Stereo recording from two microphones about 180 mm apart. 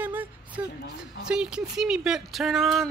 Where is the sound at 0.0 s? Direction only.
10° right (ahead or behind).